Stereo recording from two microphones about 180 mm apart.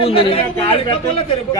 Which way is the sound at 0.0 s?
30° left (ahead or behind).